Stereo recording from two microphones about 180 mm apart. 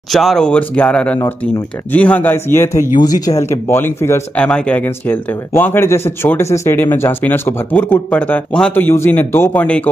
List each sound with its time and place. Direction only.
0.1 s speech: centre (ahead or behind)